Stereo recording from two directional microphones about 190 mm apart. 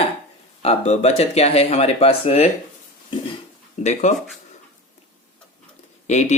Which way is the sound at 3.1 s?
25° left (ahead or behind).